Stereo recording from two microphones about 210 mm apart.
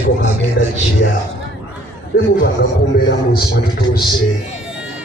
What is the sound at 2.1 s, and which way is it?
Speech, 45° left (ahead or behind).